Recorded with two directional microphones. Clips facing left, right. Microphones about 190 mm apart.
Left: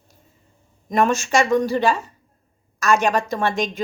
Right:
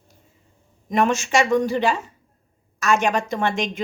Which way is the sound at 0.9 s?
20° right (ahead or behind).